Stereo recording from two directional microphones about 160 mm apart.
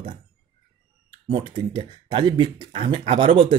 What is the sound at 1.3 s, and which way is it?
Speech, 30° right (ahead or behind).